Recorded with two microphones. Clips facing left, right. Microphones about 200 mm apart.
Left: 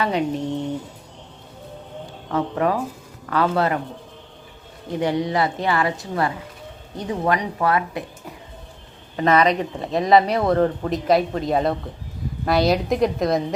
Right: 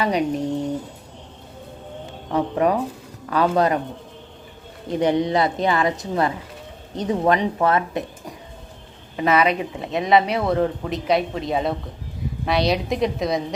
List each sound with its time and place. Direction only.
0.0 s speech: 15° right (ahead or behind)
2.3 s speech: 15° right (ahead or behind)
4.9 s speech: 20° right (ahead or behind)
9.1 s speech: 5° right (ahead or behind)